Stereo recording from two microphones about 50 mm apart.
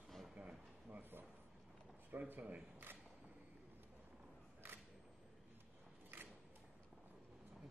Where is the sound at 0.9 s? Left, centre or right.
Right.